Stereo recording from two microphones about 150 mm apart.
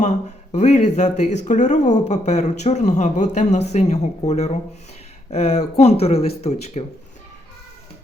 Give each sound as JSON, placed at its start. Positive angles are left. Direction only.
{"t": 0.0, "sound": "speech", "side_deg": 50}